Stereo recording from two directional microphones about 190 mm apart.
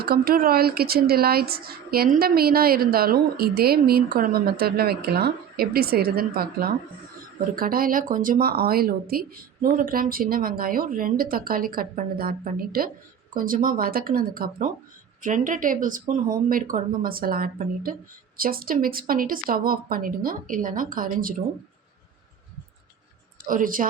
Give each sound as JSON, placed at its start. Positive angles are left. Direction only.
{"t": 0.0, "sound": "speech", "side_deg": -55}
{"t": 23.5, "sound": "speech", "side_deg": -45}